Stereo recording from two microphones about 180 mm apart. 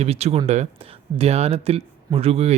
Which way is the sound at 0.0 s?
35° right (ahead or behind).